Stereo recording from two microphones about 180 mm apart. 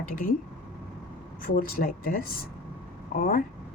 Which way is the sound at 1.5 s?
55° left (ahead or behind).